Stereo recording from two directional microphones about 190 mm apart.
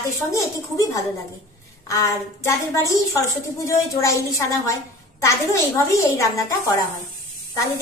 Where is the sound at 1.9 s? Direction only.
15° left (ahead or behind).